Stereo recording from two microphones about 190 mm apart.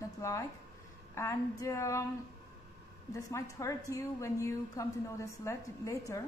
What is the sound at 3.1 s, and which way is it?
A woman's voice, 15° left (ahead or behind).